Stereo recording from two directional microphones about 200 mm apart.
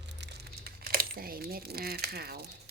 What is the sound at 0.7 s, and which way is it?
Crumpling, 50° right (ahead or behind).